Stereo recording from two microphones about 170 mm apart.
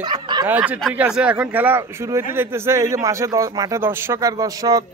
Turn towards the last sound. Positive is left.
turn(degrees=-20)  # may be behind; listen again after turning